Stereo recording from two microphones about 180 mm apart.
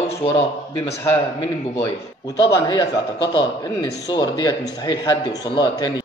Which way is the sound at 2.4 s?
20° left (ahead or behind).